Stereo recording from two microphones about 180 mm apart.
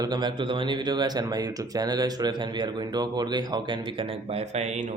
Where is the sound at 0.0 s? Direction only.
25° right (ahead or behind).